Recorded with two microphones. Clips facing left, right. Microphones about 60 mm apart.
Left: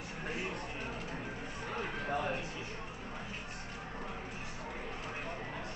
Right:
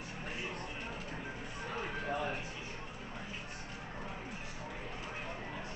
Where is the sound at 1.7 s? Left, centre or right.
Left.